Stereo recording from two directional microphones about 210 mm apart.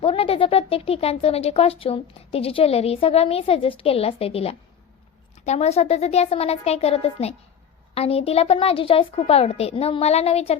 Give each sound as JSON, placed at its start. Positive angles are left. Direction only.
{"t": 0.0, "sound": "a woman's voice", "side_deg": 25}